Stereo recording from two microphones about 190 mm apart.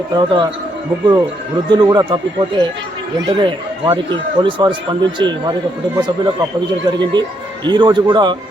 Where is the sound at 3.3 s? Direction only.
25° right (ahead or behind).